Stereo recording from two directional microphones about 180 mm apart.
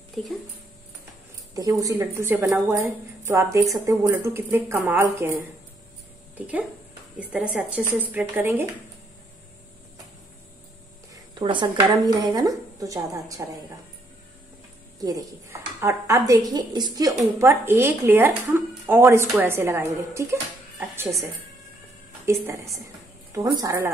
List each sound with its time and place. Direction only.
0.1 s speech: centre (ahead or behind)
1.5 s speech: 20° right (ahead or behind)
8.0 s speech: 10° right (ahead or behind)
11.3 s a woman's voice: 25° right (ahead or behind)
15.0 s speech: 20° right (ahead or behind)
22.2 s a woman's voice: 15° right (ahead or behind)